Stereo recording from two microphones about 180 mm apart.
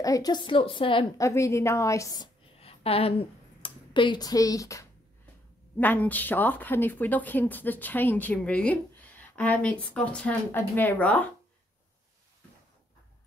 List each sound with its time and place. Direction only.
0.0 s a woman's voice: 20° left (ahead or behind)
1.2 s speech: 15° left (ahead or behind)
2.6 s a woman's voice: 35° left (ahead or behind); by 11.2 s 10° left (ahead or behind)